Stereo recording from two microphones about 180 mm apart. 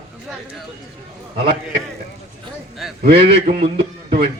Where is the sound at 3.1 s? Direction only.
30° right (ahead or behind).